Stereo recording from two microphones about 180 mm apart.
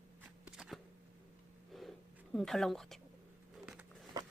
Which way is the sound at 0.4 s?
5° right (ahead or behind).